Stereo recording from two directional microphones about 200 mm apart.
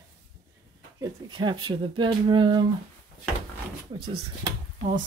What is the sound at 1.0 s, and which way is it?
Speech, 25° right (ahead or behind).